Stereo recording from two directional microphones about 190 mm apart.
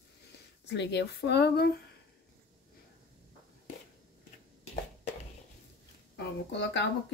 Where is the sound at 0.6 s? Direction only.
65° left (ahead or behind).